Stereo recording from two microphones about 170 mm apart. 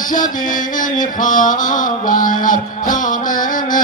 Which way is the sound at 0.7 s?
50° left (ahead or behind).